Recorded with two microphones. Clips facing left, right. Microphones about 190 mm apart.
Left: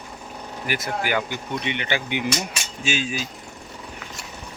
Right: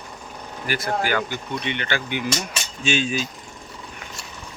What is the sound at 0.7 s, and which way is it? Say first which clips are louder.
Speech: right 2 dB; 15° left (ahead or behind).